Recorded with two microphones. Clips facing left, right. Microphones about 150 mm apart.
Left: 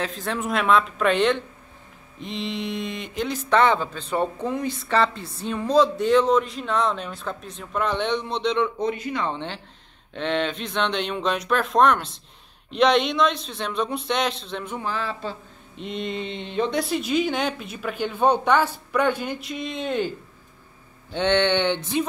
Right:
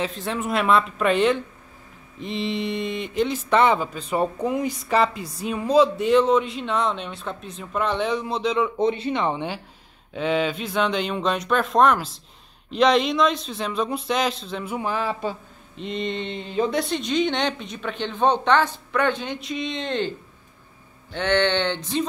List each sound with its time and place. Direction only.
0.0 s speech: centre (ahead or behind)
8.7 s speech: 25° right (ahead or behind); by 14.8 s 5° right (ahead or behind)
14.8 s speech: 15° right (ahead or behind)
15.7 s speech: centre (ahead or behind)
21.1 s a sound: 20° left (ahead or behind)